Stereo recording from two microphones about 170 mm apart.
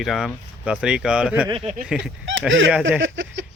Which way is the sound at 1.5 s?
35° right (ahead or behind).